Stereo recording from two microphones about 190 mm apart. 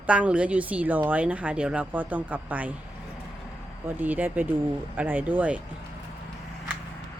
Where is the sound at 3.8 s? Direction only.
10° right (ahead or behind).